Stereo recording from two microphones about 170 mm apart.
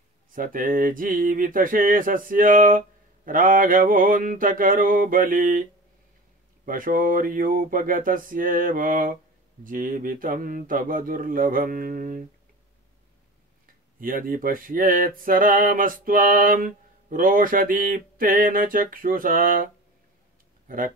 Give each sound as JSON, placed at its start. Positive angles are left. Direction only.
{"t": 0.3, "sound": "a sound", "side_deg": -55}
{"t": 6.6, "sound": "speech", "side_deg": -55}
{"t": 13.9, "sound": "speech", "side_deg": -55}